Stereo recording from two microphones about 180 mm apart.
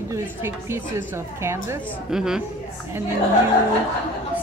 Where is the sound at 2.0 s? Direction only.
5° right (ahead or behind).